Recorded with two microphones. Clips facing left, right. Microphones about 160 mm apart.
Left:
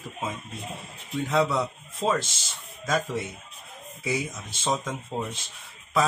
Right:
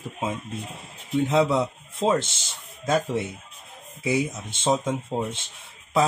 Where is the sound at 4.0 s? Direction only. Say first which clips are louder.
Right 5 dB; 25° right (ahead or behind).